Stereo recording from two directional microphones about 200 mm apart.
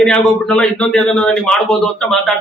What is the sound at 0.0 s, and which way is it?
Speech, 5° left (ahead or behind).